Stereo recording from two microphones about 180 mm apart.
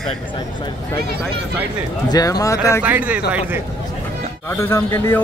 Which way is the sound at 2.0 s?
20° left (ahead or behind).